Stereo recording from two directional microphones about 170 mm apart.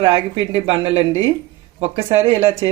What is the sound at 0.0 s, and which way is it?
Speech, 30° right (ahead or behind).